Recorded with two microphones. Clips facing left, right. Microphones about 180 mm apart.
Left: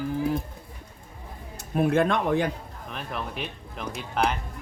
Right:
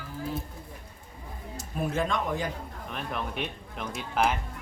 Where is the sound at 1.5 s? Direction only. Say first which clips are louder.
Left 7 dB; 60° left (ahead or behind).